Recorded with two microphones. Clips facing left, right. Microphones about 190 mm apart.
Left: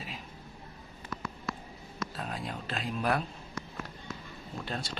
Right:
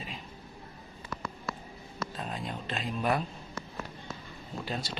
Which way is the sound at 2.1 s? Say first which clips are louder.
Right 1 dB; centre (ahead or behind).